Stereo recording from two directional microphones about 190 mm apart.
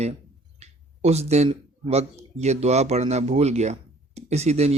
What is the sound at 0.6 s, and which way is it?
A man's voice, 35° right (ahead or behind).